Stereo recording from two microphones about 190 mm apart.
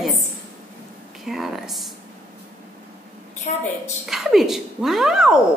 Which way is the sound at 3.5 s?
40° left (ahead or behind).